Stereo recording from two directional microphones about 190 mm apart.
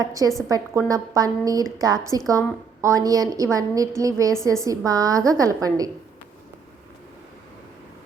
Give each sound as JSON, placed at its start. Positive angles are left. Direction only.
{"t": 0.0, "sound": "a woman's voice", "side_deg": -15}